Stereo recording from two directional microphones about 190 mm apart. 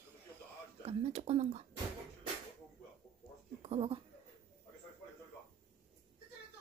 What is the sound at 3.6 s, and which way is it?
Speech, 30° right (ahead or behind).